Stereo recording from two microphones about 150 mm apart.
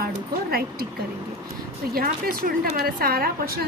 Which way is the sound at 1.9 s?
75° right (ahead or behind).